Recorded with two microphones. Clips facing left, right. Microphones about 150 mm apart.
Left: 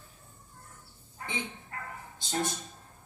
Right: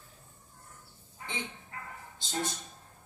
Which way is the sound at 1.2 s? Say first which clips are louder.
Left 3 dB; 60° left (ahead or behind).